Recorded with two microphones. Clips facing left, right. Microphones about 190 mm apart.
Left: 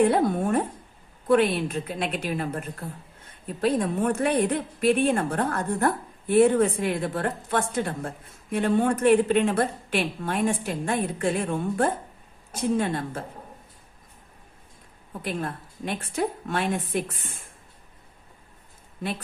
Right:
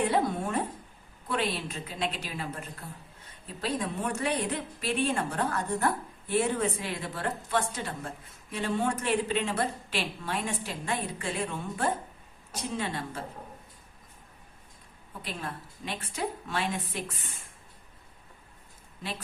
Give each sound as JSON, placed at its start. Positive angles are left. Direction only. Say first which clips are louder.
{"t": 0.0, "sound": "a woman's voice", "louder": "left 6 dB", "side_deg": 50}
{"t": 15.2, "sound": "a woman's voice", "louder": "left 7 dB", "side_deg": 50}